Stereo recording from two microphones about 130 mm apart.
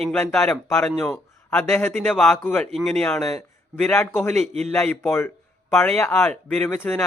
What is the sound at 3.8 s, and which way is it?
Speech, 15° left (ahead or behind).